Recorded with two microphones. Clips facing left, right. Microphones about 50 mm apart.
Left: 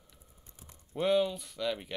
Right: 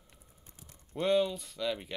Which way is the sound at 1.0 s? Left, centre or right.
Centre.